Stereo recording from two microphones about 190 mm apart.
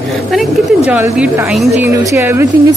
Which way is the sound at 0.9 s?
10° right (ahead or behind).